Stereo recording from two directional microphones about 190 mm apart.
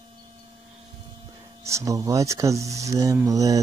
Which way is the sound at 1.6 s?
15° right (ahead or behind).